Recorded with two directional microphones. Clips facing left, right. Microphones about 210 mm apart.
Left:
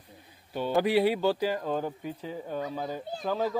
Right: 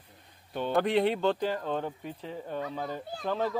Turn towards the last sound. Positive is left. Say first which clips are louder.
# left 1 dB
turn(degrees=5)  # may be behind; listen again after turning